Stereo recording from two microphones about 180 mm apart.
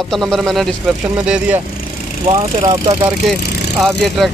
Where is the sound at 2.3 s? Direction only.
35° right (ahead or behind).